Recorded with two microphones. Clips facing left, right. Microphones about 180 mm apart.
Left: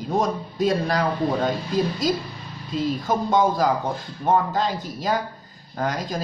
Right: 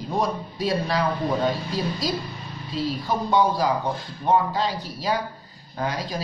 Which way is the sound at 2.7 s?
45° left (ahead or behind).